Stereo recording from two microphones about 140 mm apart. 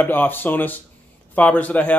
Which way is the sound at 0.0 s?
15° left (ahead or behind).